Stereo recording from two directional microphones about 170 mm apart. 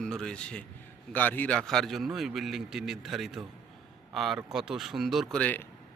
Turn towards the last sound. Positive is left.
turn(degrees=10)  # may be behind; listen again after turning